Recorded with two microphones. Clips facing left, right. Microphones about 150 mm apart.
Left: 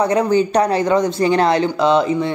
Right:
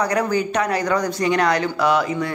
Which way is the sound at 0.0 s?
25° left (ahead or behind).